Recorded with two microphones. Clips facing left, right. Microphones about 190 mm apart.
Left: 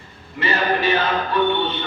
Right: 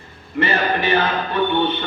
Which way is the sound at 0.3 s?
60° right (ahead or behind).